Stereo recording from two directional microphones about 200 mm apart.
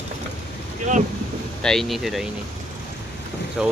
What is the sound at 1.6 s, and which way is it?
Speech, centre (ahead or behind).